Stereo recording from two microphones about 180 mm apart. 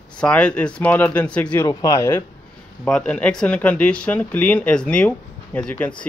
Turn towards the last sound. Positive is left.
turn(degrees=5)  # may be behind; listen again after turning